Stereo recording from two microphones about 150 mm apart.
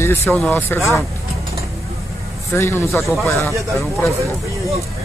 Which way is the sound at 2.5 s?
15° left (ahead or behind).